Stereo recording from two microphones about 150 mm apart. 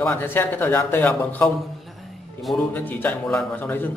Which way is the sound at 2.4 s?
Centre (ahead or behind).